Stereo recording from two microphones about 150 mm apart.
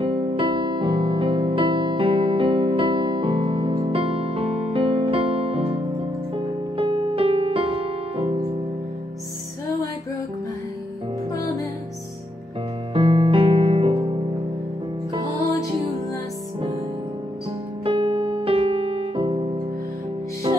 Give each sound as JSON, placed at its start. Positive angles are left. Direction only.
{"t": 0.0, "sound": "music", "side_deg": -35}
{"t": 11.3, "sound": "music", "side_deg": 20}
{"t": 12.9, "sound": "music", "side_deg": -40}
{"t": 17.8, "sound": "music", "side_deg": -35}